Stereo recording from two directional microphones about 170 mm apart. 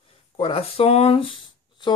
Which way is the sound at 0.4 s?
35° left (ahead or behind).